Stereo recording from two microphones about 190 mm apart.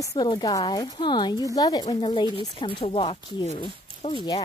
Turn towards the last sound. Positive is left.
turn(degrees=30)  # may be behind; listen again after turning